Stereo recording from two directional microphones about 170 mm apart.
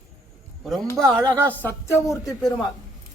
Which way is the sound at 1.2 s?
10° left (ahead or behind).